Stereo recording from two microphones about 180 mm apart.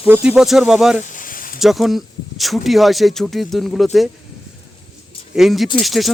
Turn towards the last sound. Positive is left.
turn(degrees=0)  # may be behind; listen again after turning